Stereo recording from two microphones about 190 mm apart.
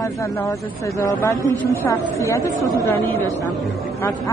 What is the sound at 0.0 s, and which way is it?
Speech, 15° left (ahead or behind).